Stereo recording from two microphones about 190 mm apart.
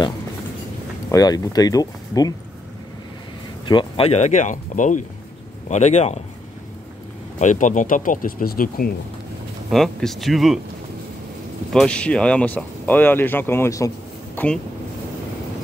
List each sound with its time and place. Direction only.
1.1 s speech: 20° left (ahead or behind)
3.6 s speech: 25° left (ahead or behind)
7.3 s speech: 40° left (ahead or behind)
9.7 s speech: centre (ahead or behind)
11.7 s speech: 5° left (ahead or behind)